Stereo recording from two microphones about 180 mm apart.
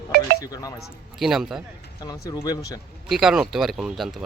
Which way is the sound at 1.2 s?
Centre (ahead or behind).